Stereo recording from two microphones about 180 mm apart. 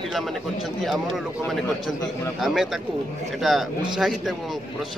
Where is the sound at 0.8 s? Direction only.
Centre (ahead or behind).